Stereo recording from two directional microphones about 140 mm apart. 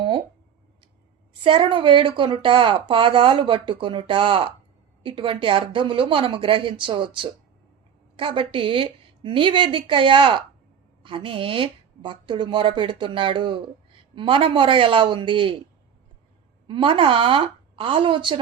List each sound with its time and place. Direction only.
1.3 s a woman's voice: 35° right (ahead or behind)
16.6 s a woman's voice: 40° right (ahead or behind)